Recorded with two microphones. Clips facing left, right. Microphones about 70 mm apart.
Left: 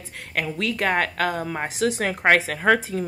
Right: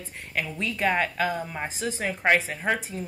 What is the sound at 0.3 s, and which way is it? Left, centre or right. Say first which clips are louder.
A woman's voice: left 4 dB; left.